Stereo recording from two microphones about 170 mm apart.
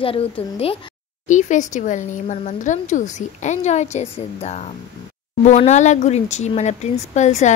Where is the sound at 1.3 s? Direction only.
45° left (ahead or behind).